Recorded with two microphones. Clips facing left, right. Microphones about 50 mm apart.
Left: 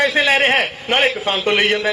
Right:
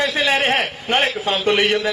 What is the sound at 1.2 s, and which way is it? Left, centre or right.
Speech, left.